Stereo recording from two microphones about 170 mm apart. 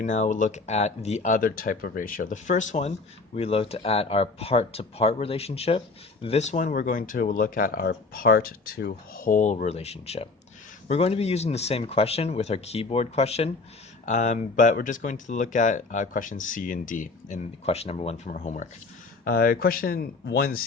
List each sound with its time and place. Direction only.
0.0 s speech: 50° left (ahead or behind)
3.3 s speech: 35° left (ahead or behind)
19.2 s speech: 60° left (ahead or behind)